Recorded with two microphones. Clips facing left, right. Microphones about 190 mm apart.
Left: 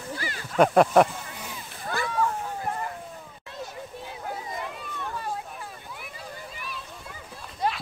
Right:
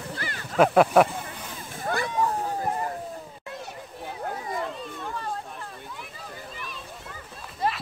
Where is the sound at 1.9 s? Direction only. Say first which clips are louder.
Right 2 dB; 50° right (ahead or behind).